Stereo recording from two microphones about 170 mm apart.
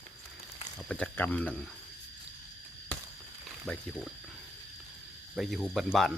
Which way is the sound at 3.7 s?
5° left (ahead or behind).